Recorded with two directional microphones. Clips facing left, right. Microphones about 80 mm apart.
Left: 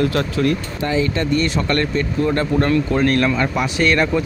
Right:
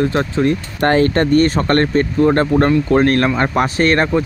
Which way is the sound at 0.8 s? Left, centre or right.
Right.